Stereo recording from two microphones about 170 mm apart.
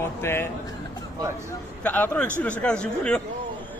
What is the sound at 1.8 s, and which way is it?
A man's voice, 10° left (ahead or behind).